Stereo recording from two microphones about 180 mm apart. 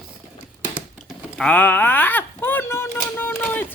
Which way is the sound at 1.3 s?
5° left (ahead or behind).